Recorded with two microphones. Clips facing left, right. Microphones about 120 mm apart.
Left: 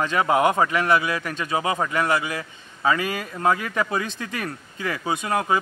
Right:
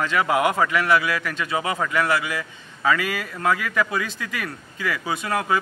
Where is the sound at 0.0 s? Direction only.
25° left (ahead or behind).